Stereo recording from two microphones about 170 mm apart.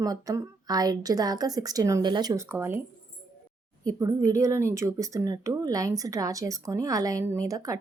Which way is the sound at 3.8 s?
20° right (ahead or behind).